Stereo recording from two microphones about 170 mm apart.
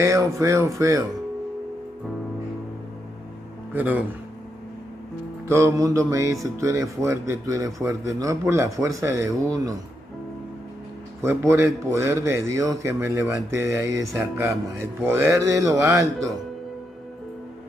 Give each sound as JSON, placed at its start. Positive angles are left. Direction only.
{"t": 0.0, "sound": "speech", "side_deg": -20}
{"t": 3.7, "sound": "speech", "side_deg": -10}
{"t": 5.5, "sound": "speech", "side_deg": -20}
{"t": 11.2, "sound": "speech", "side_deg": -15}